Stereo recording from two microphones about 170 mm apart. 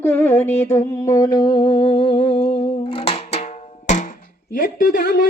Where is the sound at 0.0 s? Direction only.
10° left (ahead or behind).